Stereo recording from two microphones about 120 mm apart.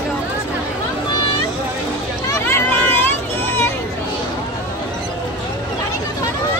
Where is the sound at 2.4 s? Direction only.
15° left (ahead or behind).